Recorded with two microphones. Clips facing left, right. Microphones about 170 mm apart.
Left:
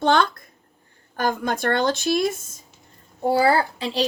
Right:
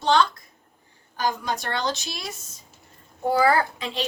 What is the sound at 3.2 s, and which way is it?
Speech, 30° left (ahead or behind).